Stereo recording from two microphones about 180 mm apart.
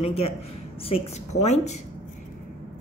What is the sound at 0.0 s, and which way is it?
A woman's voice, 35° left (ahead or behind).